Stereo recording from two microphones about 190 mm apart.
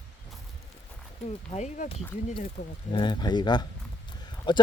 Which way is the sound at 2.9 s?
25° left (ahead or behind).